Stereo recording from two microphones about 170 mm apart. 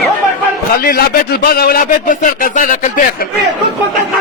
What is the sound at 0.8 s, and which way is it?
Speech, 60° left (ahead or behind).